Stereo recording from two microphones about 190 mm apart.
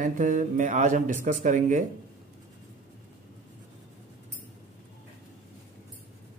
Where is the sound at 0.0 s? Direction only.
40° right (ahead or behind).